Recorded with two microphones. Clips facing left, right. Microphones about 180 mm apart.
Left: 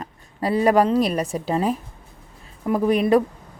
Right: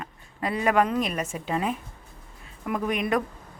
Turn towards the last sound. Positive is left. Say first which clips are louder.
# left 8 dB
turn(degrees=35)  # may be behind; listen again after turning